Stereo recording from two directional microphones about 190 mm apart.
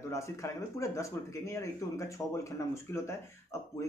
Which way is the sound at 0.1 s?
15° left (ahead or behind).